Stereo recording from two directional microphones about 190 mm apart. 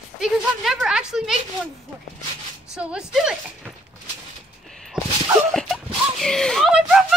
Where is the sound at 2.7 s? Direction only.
5° right (ahead or behind).